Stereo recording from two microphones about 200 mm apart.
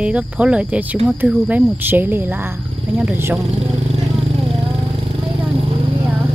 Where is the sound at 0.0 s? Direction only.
5° right (ahead or behind).